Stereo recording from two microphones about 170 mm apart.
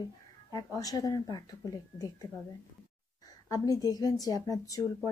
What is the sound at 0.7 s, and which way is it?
A woman's voice, 20° left (ahead or behind).